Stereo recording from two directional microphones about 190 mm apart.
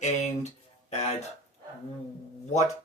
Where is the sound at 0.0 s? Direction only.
40° left (ahead or behind).